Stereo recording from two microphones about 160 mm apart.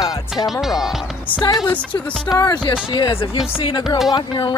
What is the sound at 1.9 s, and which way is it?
Speech, 25° left (ahead or behind).